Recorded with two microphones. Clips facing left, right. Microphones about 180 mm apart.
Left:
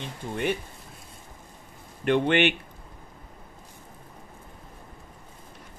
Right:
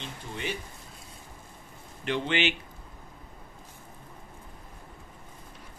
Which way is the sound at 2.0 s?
55° left (ahead or behind).